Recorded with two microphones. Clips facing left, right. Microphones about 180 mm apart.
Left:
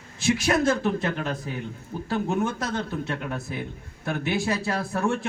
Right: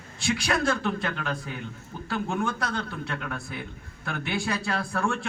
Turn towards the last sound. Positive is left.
turn(degrees=20)  # may be behind; listen again after turning